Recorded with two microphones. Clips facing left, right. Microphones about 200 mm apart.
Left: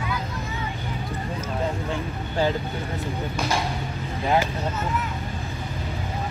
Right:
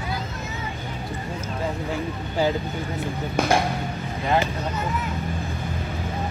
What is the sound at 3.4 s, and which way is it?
Speech, 50° right (ahead or behind).